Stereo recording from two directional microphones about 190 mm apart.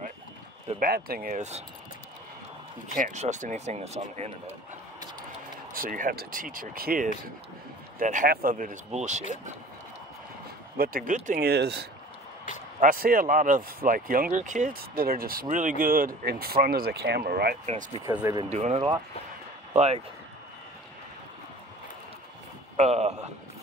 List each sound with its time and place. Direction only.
0.7 s speech: 50° right (ahead or behind)
1.3 s speech: 35° right (ahead or behind)
3.0 s speech: 40° right (ahead or behind)
5.7 s speech: 45° right (ahead or behind)
10.8 s speech: 50° right (ahead or behind)
12.8 s speech: 50° right (ahead or behind)
18.0 s speech: 15° right (ahead or behind)
18.5 s speech: 35° right (ahead or behind)
22.8 s speech: 35° right (ahead or behind)